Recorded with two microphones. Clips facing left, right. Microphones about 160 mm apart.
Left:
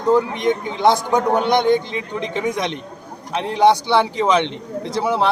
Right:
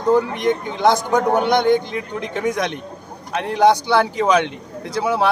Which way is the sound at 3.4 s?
Centre (ahead or behind).